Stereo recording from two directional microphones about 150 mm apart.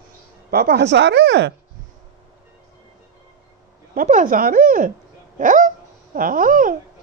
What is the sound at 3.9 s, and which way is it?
Speech, 65° right (ahead or behind).